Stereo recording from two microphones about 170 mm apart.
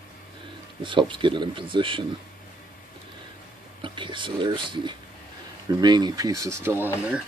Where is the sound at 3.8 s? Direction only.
30° right (ahead or behind); by 7.2 s 10° right (ahead or behind).